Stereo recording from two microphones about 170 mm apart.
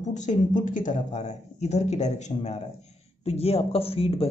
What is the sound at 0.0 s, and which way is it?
A man's voice, 45° left (ahead or behind).